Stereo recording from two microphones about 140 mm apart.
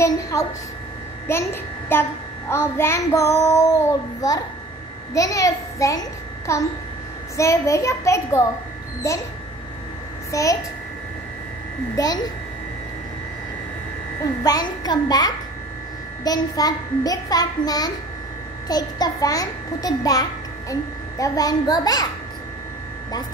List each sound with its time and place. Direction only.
0.0 s a woman's voice: 20° left (ahead or behind)
1.2 s child singing: 15° left (ahead or behind)
2.5 s a child's voice: 20° left (ahead or behind)
10.3 s a child's voice: 25° left (ahead or behind)
11.9 s a child's voice: 25° left (ahead or behind)
14.2 s a child's voice: 25° left (ahead or behind)